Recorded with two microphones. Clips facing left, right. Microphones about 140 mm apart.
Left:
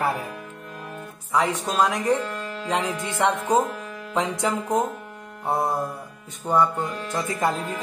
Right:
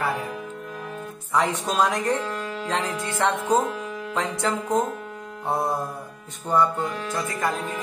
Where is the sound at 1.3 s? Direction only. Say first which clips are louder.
Even; centre (ahead or behind).